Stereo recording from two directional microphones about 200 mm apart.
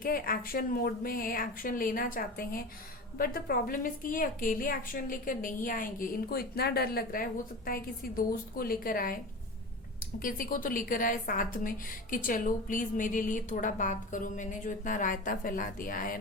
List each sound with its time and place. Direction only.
0.0 s a woman's voice: 45° left (ahead or behind)
10.2 s a woman's voice: 45° left (ahead or behind)